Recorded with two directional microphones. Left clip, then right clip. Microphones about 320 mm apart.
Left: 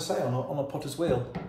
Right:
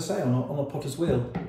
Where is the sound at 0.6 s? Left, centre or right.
Centre.